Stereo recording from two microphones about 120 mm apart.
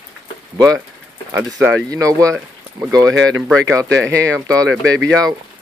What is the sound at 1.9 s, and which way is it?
Speech, 30° right (ahead or behind).